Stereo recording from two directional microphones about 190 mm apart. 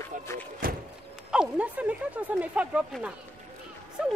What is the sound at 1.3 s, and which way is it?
Speech, 5° right (ahead or behind).